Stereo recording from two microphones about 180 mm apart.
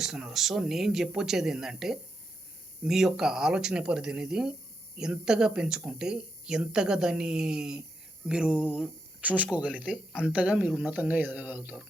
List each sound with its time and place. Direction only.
0.0 s speech: 5° right (ahead or behind)